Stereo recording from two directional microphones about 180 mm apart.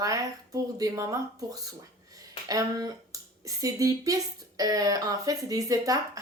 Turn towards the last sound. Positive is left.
turn(degrees=-20)  # may be behind; listen again after turning